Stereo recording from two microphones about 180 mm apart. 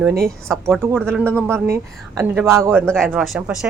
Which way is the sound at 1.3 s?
10° right (ahead or behind).